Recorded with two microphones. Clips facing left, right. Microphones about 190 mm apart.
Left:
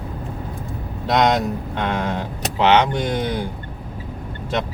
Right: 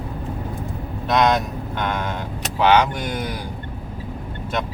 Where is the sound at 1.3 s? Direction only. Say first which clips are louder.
Left 2 dB; 30° left (ahead or behind).